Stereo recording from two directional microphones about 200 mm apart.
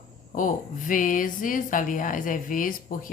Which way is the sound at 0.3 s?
40° left (ahead or behind).